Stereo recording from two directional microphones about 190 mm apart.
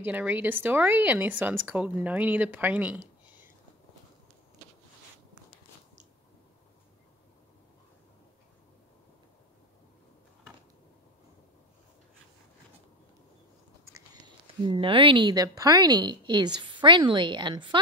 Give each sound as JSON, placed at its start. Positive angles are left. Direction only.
{"t": 0.0, "sound": "speech", "side_deg": -10}
{"t": 14.2, "sound": "a woman's voice", "side_deg": -25}